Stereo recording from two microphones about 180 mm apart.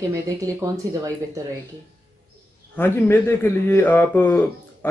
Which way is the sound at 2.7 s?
10° left (ahead or behind).